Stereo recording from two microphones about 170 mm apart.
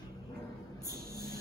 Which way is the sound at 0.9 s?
60° right (ahead or behind).